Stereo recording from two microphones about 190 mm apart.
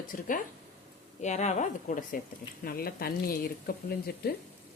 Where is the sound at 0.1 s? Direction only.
45° left (ahead or behind).